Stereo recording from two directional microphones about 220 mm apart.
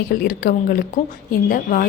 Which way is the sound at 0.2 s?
40° left (ahead or behind).